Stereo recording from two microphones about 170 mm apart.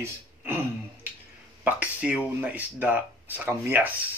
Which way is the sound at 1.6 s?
10° right (ahead or behind).